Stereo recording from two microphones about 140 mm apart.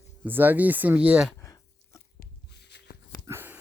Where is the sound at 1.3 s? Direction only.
20° left (ahead or behind).